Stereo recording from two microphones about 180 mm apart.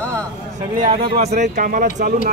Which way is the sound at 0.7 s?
45° right (ahead or behind).